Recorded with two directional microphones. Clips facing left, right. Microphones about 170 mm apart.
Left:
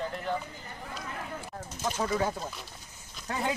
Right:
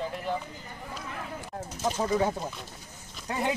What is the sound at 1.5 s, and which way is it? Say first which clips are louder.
Bird: right 5 dB; 30° right (ahead or behind).